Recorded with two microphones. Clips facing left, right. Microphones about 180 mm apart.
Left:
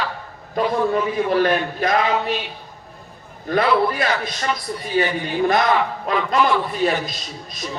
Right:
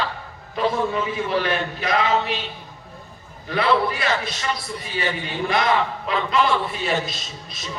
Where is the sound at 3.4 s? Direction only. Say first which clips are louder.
Left 3 dB; 45° left (ahead or behind).